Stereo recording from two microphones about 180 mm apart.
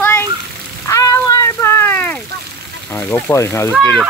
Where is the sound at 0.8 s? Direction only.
20° left (ahead or behind).